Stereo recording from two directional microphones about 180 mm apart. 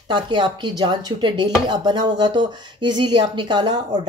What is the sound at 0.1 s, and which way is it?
Speech, 25° right (ahead or behind).